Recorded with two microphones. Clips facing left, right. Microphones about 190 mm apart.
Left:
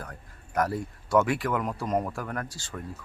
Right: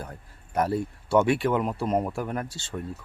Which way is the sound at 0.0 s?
25° right (ahead or behind).